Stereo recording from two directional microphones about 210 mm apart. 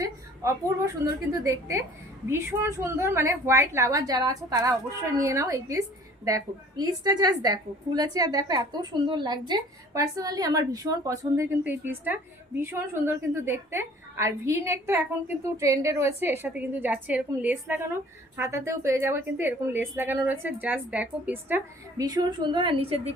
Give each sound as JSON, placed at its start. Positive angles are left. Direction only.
{"t": 1.3, "sound": "a woman's voice", "side_deg": -15}